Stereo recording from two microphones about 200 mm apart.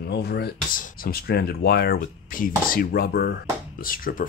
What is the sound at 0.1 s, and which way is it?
Speech, 55° left (ahead or behind).